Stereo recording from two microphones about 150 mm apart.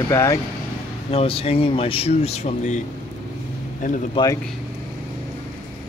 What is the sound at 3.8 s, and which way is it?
Speech, 60° left (ahead or behind).